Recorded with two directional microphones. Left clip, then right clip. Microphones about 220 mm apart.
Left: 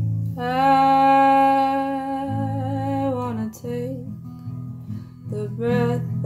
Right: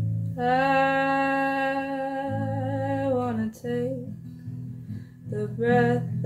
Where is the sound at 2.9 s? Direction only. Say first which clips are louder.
Left 1 dB; 15° left (ahead or behind).